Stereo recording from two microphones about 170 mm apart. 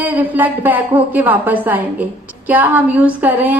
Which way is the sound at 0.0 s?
10° right (ahead or behind).